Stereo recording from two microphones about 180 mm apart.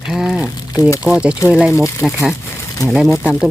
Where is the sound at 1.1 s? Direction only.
5° right (ahead or behind).